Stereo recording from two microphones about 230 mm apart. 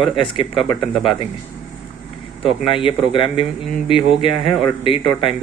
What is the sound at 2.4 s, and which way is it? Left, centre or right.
Speech, left.